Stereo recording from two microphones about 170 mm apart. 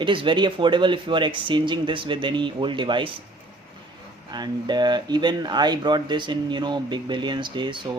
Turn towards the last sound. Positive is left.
turn(degrees=-25)  # may be behind; listen again after turning